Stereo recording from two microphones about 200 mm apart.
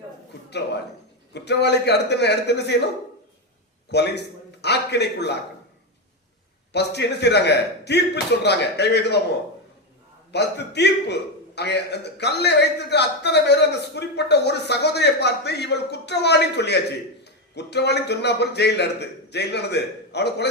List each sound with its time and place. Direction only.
1.3 s a man's voice: 55° left (ahead or behind)
3.9 s a man's voice: 55° left (ahead or behind)
6.7 s a man's voice: 55° left (ahead or behind)
10.3 s a man's voice: 55° left (ahead or behind)